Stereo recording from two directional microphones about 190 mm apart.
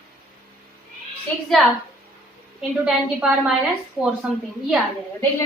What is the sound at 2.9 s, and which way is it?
Speech, 5° right (ahead or behind).